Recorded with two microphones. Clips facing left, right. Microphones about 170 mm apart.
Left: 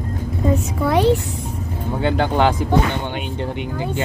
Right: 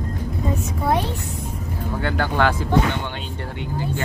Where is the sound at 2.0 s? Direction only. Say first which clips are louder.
Left 4 dB; 20° left (ahead or behind).